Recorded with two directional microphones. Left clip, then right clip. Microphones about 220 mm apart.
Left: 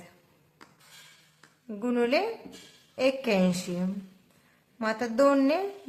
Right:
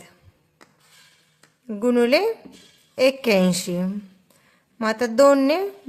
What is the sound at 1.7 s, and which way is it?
A woman's voice, 45° right (ahead or behind).